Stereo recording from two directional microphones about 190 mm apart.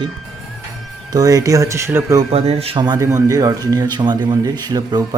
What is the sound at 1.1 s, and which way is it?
Speech, 20° right (ahead or behind).